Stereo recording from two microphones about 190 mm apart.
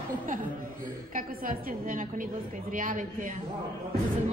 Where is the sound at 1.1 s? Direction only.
45° right (ahead or behind).